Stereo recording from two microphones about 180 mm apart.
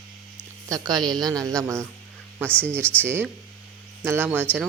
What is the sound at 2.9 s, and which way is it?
Speech, 10° right (ahead or behind).